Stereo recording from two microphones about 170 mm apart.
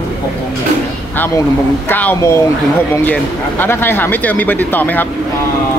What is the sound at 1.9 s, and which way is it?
Speech, 10° left (ahead or behind).